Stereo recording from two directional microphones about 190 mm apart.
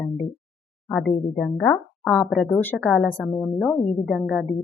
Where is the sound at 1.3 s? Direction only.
5° left (ahead or behind).